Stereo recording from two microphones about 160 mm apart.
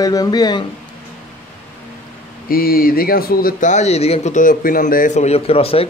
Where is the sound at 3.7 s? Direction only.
40° left (ahead or behind).